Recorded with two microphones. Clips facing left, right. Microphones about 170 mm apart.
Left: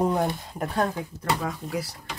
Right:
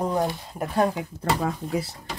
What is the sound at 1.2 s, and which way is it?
Speech, 30° right (ahead or behind).